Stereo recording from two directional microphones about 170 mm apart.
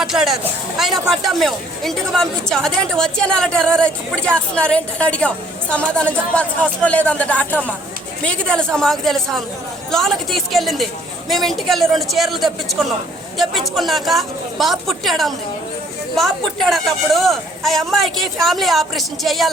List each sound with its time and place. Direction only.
0.0 s a woman's voice: centre (ahead or behind)